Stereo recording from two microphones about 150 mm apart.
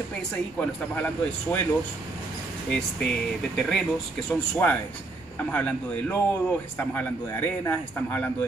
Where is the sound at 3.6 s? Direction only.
5° left (ahead or behind).